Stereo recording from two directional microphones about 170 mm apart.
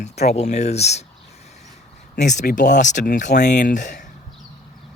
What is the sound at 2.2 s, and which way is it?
Speech, 45° left (ahead or behind).